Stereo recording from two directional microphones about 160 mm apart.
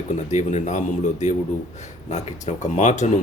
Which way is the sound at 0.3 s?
45° left (ahead or behind).